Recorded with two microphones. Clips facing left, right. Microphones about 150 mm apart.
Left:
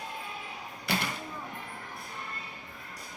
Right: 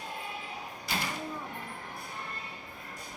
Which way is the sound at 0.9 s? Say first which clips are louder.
Left 4 dB; 65° left (ahead or behind).